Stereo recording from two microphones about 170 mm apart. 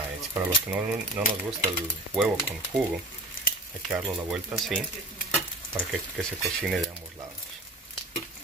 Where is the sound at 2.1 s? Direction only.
5° right (ahead or behind).